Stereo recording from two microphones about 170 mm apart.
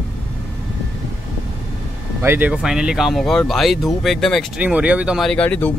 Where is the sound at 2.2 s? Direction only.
10° right (ahead or behind).